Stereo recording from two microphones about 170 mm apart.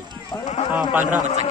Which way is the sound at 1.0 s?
45° right (ahead or behind).